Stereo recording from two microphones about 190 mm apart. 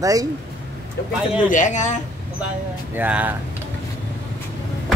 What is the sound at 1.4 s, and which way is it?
Speech, 40° left (ahead or behind).